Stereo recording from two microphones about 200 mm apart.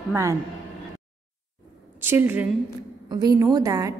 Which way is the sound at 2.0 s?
10° right (ahead or behind).